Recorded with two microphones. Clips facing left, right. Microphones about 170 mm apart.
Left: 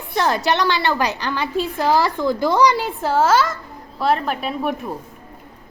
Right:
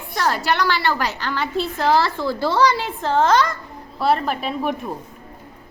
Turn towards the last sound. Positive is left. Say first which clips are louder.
# even
turn(degrees=0)  # may be behind; listen again after turning